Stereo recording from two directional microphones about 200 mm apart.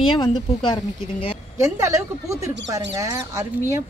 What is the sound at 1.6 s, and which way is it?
Speech, 15° right (ahead or behind).